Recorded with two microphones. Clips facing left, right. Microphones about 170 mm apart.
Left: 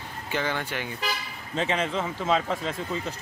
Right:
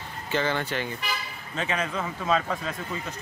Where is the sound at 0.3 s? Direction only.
10° left (ahead or behind).